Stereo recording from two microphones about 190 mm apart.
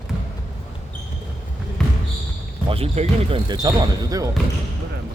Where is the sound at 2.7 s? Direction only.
30° right (ahead or behind).